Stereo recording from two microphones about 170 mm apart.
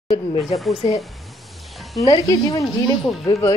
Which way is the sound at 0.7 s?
35° left (ahead or behind).